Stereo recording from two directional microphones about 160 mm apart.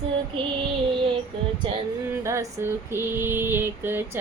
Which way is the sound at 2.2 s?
15° right (ahead or behind).